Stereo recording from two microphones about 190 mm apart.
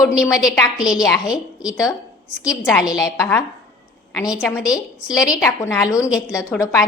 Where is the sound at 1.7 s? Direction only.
15° left (ahead or behind).